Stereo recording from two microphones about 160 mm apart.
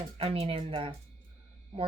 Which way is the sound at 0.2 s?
35° right (ahead or behind).